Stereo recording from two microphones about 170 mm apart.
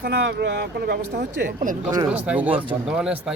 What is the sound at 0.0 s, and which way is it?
Speech, 75° right (ahead or behind).